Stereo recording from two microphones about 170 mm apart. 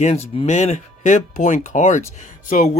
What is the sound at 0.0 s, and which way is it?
Speech, 40° left (ahead or behind).